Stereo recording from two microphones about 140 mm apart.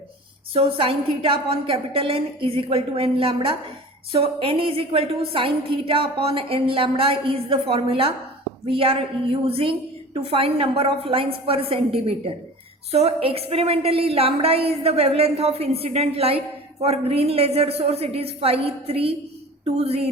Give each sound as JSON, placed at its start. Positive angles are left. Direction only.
{"t": 0.5, "sound": "a woman's voice", "side_deg": -40}